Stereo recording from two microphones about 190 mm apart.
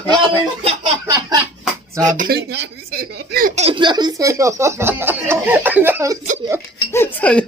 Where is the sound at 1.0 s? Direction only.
20° right (ahead or behind).